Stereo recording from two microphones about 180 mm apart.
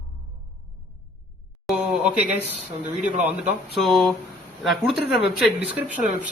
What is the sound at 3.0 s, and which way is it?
Speech, 40° right (ahead or behind).